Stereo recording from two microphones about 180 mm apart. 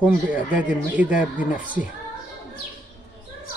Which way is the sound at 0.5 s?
10° right (ahead or behind).